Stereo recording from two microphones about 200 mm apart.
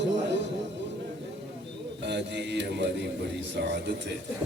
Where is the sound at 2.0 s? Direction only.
60° right (ahead or behind).